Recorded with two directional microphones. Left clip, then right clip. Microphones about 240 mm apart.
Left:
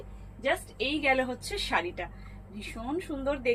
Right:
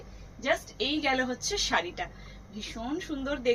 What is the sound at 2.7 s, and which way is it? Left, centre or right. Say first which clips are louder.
Speech: left 1 dB; centre.